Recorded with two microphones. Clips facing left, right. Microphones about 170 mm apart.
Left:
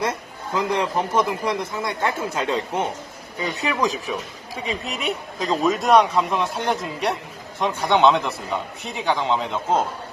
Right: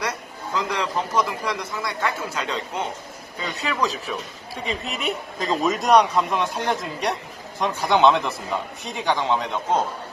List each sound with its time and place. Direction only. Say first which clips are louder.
0.0 s speech: left 3 dB; 25° left (ahead or behind)
4.5 s speech: left 1 dB; centre (ahead or behind)